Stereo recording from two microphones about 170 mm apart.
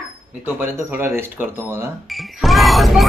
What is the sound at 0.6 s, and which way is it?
Speech, 10° right (ahead or behind).